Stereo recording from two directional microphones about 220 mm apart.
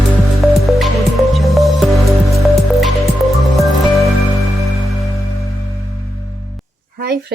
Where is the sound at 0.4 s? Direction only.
Centre (ahead or behind).